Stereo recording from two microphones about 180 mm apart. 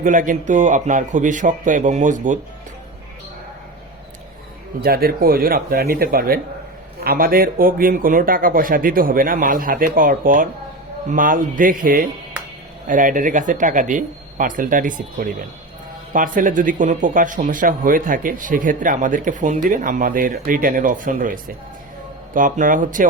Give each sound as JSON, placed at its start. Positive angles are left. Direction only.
{"t": 0.0, "sound": "speech", "side_deg": -45}
{"t": 4.8, "sound": "speech", "side_deg": -60}